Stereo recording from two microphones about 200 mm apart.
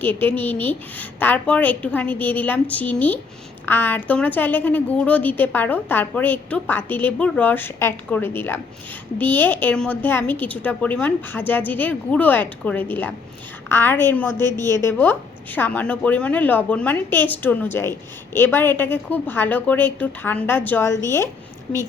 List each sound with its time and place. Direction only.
0.0 s a woman's voice: 10° left (ahead or behind)